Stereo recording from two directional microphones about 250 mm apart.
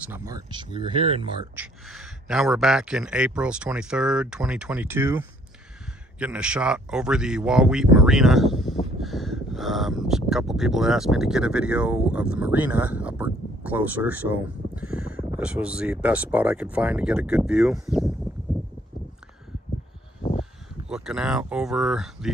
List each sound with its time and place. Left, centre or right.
0.0 s speech: centre
1.5 s a man's voice: centre
20.2 s a sound: left
20.9 s a man's voice: centre